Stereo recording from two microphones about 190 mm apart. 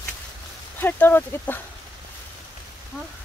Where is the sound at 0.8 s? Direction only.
10° left (ahead or behind).